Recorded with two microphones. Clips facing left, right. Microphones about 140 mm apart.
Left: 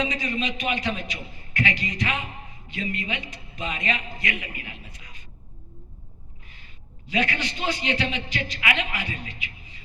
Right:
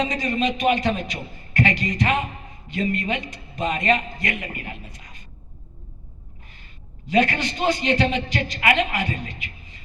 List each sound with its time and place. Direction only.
0.0 s a man's voice: 45° right (ahead or behind)
7.1 s a man's voice: 45° right (ahead or behind)